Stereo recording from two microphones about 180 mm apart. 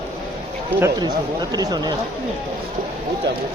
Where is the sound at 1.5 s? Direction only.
20° right (ahead or behind).